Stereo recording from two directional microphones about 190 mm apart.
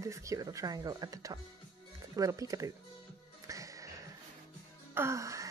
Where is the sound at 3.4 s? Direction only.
15° right (ahead or behind).